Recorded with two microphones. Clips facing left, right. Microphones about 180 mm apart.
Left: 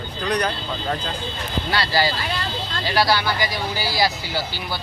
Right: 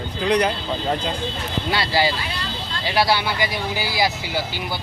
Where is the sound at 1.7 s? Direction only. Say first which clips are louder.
Right 1 dB; 20° right (ahead or behind).